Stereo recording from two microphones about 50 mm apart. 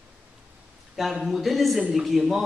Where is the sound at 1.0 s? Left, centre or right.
Centre.